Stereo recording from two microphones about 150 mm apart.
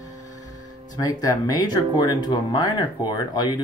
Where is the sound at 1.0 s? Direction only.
25° left (ahead or behind).